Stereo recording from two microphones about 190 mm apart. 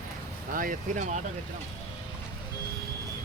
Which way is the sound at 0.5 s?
45° right (ahead or behind).